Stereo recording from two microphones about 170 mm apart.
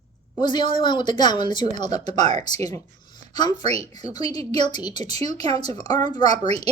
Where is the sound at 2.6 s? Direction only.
25° left (ahead or behind).